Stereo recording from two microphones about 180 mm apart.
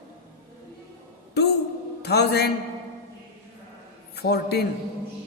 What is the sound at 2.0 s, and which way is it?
Speech, 65° left (ahead or behind).